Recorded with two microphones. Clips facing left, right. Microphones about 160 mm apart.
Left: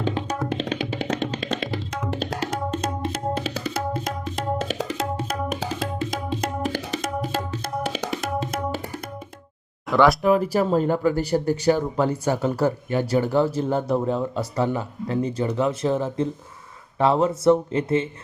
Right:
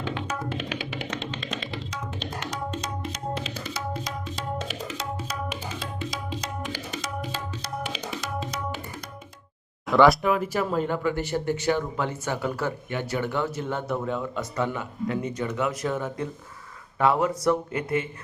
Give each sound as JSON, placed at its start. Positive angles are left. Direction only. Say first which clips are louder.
{"t": 0.0, "sound": "music", "louder": "left 5 dB", "side_deg": 35}
{"t": 1.5, "sound": "music", "louder": "left 6 dB", "side_deg": 60}
{"t": 2.5, "sound": "tabla", "louder": "left 6 dB", "side_deg": 50}
{"t": 5.8, "sound": "music", "louder": "left 6 dB", "side_deg": 50}
{"t": 9.9, "sound": "speech", "louder": "even", "side_deg": 0}
{"t": 10.2, "sound": "speech", "louder": "left 5 dB", "side_deg": 35}